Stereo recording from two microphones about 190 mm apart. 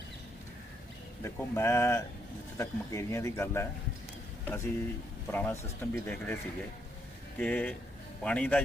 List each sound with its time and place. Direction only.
1.2 s speech: 15° left (ahead or behind)
7.3 s speech: 5° left (ahead or behind)